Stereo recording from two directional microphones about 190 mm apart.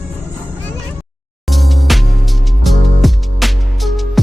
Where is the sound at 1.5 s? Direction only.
Centre (ahead or behind).